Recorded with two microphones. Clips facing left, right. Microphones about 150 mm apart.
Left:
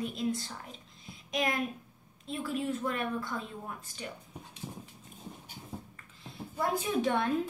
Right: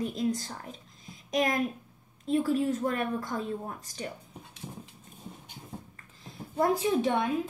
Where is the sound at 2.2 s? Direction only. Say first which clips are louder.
Right 8 dB; 40° right (ahead or behind).